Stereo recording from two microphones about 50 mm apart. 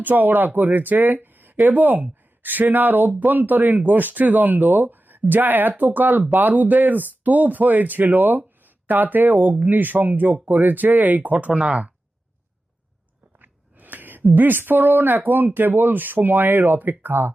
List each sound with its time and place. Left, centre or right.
0.0 s speech: right
11.5 s speech: right
13.4 s speech: right